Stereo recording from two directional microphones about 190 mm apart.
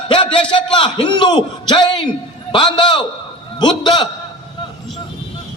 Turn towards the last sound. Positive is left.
turn(degrees=25)  # may be behind; listen again after turning